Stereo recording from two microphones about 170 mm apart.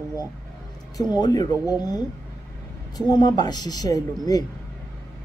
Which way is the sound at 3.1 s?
25° left (ahead or behind).